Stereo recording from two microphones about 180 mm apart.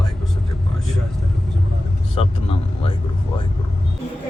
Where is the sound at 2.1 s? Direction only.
35° left (ahead or behind).